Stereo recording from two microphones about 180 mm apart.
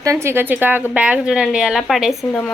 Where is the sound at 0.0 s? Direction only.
15° right (ahead or behind).